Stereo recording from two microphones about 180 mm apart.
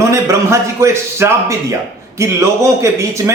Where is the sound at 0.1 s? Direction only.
15° right (ahead or behind).